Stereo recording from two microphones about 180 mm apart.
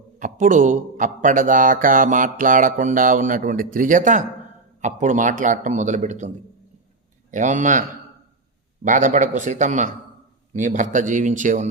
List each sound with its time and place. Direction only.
0.2 s speech: 45° right (ahead or behind)